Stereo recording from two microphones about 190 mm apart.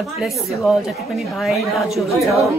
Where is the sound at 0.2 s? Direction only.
5° right (ahead or behind).